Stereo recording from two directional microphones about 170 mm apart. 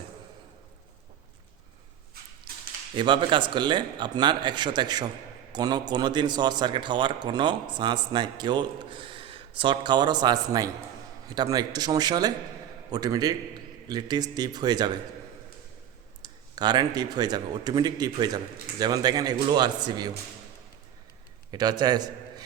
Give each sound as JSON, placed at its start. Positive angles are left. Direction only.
{"t": 2.9, "sound": "a man's voice", "side_deg": -30}
{"t": 16.2, "sound": "a man's voice", "side_deg": -25}
{"t": 21.5, "sound": "a man's voice", "side_deg": -25}